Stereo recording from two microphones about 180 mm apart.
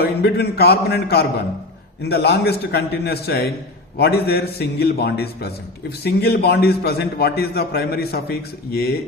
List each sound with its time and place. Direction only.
0.2 s a man's voice: 60° left (ahead or behind)